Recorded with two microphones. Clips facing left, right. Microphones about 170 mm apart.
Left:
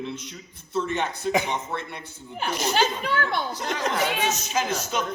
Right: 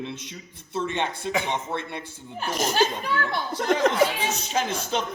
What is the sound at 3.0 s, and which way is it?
Speech, 60° left (ahead or behind).